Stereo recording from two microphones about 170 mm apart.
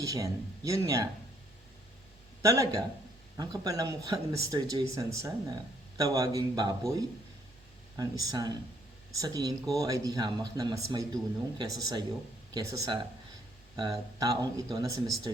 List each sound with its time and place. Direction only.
0.0 s speech: 20° right (ahead or behind)
2.4 s speech: 20° right (ahead or behind)